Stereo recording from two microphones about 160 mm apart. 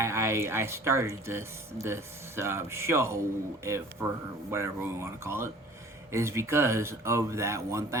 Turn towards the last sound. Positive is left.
turn(degrees=-20)  # may be behind; listen again after turning